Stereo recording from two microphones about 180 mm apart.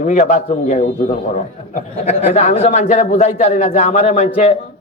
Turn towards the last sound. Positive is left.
turn(degrees=40)  # may be behind; listen again after turning